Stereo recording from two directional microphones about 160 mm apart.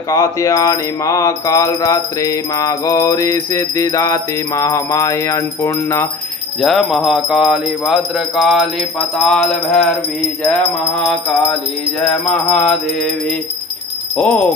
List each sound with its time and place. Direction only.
0.1 s mantra: 20° left (ahead or behind)
6.6 s music: centre (ahead or behind)
12.1 s music: 5° left (ahead or behind)
14.1 s speech: 5° left (ahead or behind)